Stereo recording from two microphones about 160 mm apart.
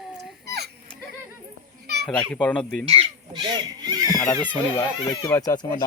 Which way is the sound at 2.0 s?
5° left (ahead or behind).